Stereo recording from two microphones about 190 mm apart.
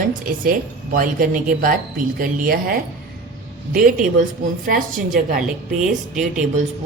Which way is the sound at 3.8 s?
45° right (ahead or behind).